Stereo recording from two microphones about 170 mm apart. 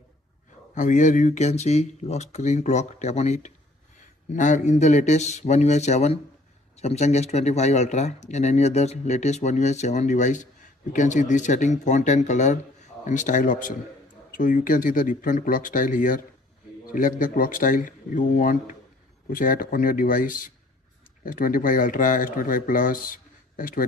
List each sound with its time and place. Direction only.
0.7 s speech: 50° left (ahead or behind)